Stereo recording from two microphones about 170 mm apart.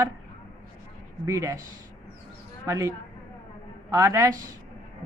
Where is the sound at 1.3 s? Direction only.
15° right (ahead or behind).